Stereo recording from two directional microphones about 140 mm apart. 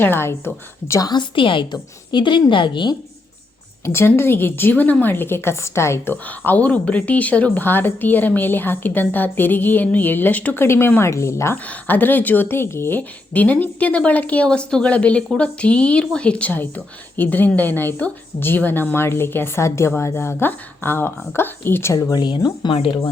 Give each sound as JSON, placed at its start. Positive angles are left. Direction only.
{"t": 0.0, "sound": "a woman's voice", "side_deg": 15}
{"t": 3.8, "sound": "a woman's voice", "side_deg": 15}